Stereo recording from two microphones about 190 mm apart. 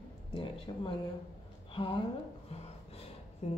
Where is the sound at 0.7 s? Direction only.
25° left (ahead or behind).